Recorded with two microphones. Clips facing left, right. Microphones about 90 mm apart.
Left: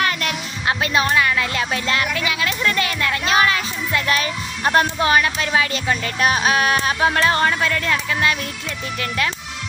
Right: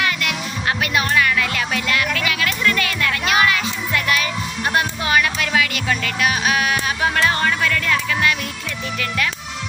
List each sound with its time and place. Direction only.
0.0 s music: 35° left (ahead or behind)
9.0 s speech: 30° left (ahead or behind)